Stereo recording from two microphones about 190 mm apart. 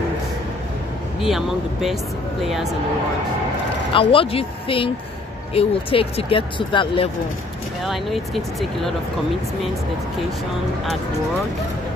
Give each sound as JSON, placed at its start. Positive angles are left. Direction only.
{"t": 1.2, "sound": "speech", "side_deg": 0}
{"t": 3.9, "sound": "speech", "side_deg": 30}
{"t": 7.8, "sound": "speech", "side_deg": 0}